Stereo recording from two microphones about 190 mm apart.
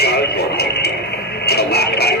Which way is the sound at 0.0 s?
55° left (ahead or behind).